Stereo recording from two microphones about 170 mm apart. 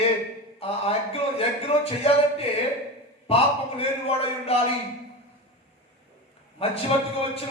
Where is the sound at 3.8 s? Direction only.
35° left (ahead or behind).